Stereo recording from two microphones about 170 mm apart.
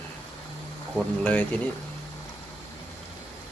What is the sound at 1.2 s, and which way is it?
Speech, 10° left (ahead or behind).